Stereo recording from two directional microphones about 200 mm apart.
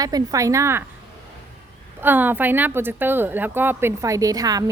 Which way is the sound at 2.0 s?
10° right (ahead or behind).